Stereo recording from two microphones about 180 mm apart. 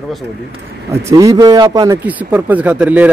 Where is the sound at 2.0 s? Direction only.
10° right (ahead or behind).